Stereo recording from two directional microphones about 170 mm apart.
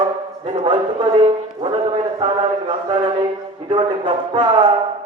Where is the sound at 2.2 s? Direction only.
30° right (ahead or behind).